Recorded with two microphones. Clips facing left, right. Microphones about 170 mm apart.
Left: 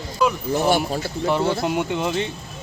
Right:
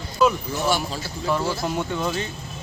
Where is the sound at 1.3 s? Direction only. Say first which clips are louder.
Left 3 dB; 25° left (ahead or behind).